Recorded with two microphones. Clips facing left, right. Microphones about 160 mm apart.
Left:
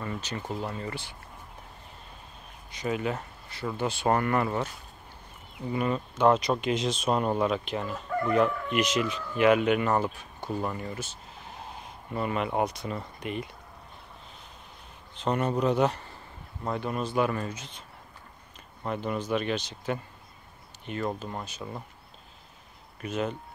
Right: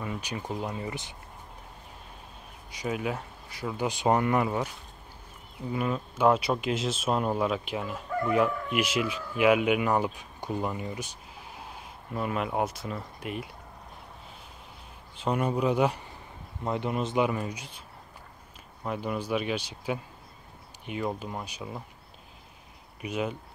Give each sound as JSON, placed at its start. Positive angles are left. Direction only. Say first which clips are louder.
{"t": 0.0, "sound": "speech", "louder": "even", "side_deg": -10}
{"t": 2.7, "sound": "speech", "louder": "left 1 dB", "side_deg": -5}
{"t": 15.1, "sound": "speech", "louder": "even", "side_deg": -10}
{"t": 18.9, "sound": "speech", "louder": "left 1 dB", "side_deg": -5}
{"t": 23.0, "sound": "speech", "louder": "left 1 dB", "side_deg": -10}